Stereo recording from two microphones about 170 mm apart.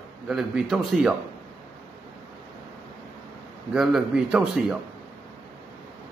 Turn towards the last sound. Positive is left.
turn(degrees=-5)  # may be behind; listen again after turning